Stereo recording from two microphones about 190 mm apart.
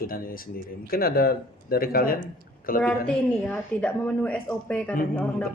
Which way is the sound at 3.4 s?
5° left (ahead or behind).